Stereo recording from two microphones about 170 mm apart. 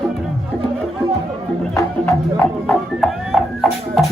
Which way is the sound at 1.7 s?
20° left (ahead or behind).